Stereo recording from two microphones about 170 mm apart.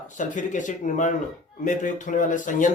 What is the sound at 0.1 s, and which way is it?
Speech, 50° left (ahead or behind).